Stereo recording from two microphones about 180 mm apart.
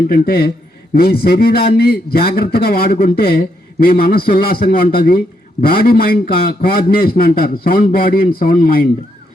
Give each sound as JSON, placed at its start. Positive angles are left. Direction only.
{"t": 0.1, "sound": "a man's voice", "side_deg": 60}